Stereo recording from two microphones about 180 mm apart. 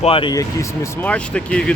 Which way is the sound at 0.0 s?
30° left (ahead or behind).